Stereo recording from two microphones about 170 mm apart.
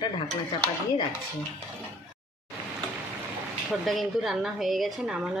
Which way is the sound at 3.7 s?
Centre (ahead or behind).